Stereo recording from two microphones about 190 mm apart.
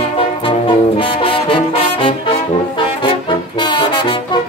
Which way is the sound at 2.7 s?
25° left (ahead or behind).